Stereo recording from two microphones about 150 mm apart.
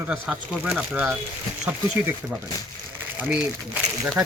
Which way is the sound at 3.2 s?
10° right (ahead or behind).